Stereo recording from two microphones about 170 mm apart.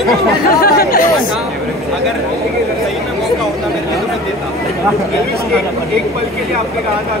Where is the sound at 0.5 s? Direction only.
60° left (ahead or behind).